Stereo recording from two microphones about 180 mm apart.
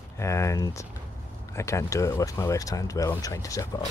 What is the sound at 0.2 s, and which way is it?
Speech, 15° left (ahead or behind).